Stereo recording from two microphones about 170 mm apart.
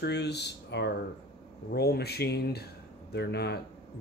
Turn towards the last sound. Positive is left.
turn(degrees=75)  # may be behind; listen again after turning